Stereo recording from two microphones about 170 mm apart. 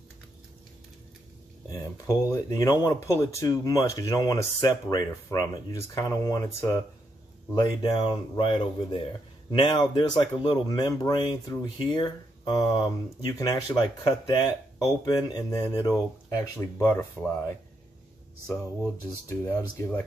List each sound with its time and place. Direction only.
1.7 s speech: 20° left (ahead or behind)
19.2 s speech: 15° left (ahead or behind)